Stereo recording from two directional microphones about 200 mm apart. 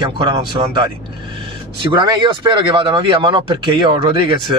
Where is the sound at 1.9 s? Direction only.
25° right (ahead or behind).